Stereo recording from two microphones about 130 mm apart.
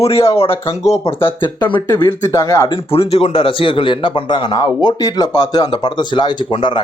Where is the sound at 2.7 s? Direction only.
45° left (ahead or behind).